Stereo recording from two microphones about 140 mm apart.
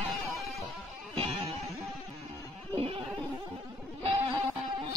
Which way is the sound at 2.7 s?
40° right (ahead or behind).